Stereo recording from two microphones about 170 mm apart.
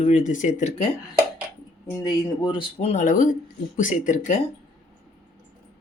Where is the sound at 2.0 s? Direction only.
25° left (ahead or behind); by 4.4 s 50° left (ahead or behind).